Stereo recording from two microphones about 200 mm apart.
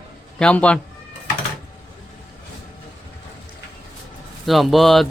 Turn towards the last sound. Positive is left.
turn(degrees=0)  # may be behind; listen again after turning